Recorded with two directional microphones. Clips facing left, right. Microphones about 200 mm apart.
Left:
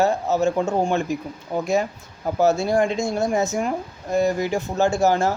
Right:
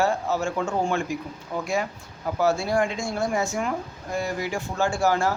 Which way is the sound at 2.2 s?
20° left (ahead or behind).